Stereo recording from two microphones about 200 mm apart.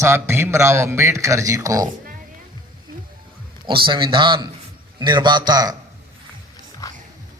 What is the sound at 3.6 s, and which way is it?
A man's voice, 25° right (ahead or behind).